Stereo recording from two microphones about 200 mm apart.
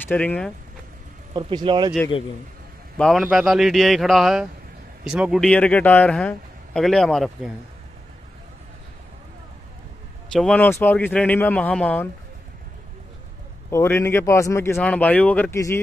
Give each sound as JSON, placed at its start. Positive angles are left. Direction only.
{"t": 0.1, "sound": "speech", "side_deg": 5}
{"t": 1.3, "sound": "speech", "side_deg": -20}
{"t": 3.0, "sound": "a man's voice", "side_deg": 0}
{"t": 10.3, "sound": "speech", "side_deg": 5}
{"t": 13.7, "sound": "speech", "side_deg": 10}